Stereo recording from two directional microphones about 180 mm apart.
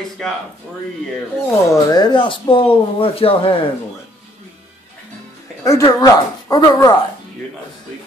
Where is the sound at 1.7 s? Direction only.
20° left (ahead or behind).